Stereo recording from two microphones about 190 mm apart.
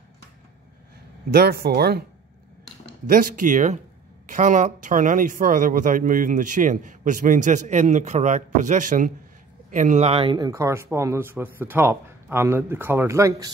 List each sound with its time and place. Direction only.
1.3 s speech: 55° right (ahead or behind)
3.1 s speech: 45° right (ahead or behind); by 13.5 s 15° right (ahead or behind)